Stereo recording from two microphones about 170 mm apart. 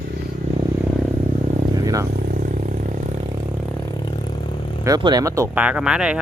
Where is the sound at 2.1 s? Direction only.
55° right (ahead or behind).